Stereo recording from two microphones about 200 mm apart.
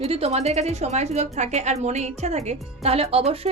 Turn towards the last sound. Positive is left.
turn(degrees=-30)  # may be behind; listen again after turning